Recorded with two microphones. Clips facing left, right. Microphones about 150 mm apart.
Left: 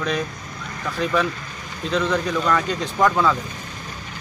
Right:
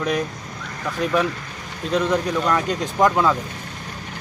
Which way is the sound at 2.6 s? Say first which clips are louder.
Right 1 dB; 45° right (ahead or behind).